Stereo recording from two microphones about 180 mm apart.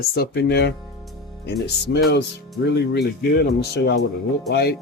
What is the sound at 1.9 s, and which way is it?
Speech, 70° left (ahead or behind).